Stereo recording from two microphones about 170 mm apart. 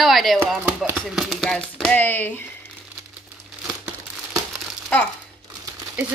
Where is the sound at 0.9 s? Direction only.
Centre (ahead or behind).